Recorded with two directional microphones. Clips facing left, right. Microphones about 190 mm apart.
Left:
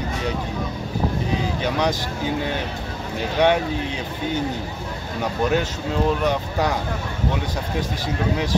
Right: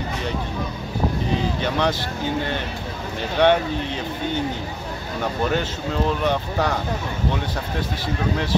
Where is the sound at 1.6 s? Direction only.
10° left (ahead or behind).